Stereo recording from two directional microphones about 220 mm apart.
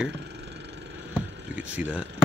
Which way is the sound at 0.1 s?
50° right (ahead or behind).